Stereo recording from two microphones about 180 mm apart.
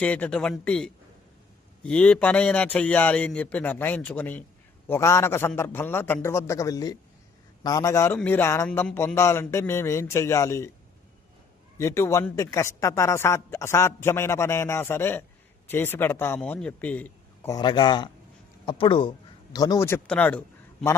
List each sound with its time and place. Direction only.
0.0 s speech: 10° left (ahead or behind)
11.8 s a man's voice: 15° left (ahead or behind)
17.5 s speech: 25° left (ahead or behind); by 20.4 s 10° left (ahead or behind)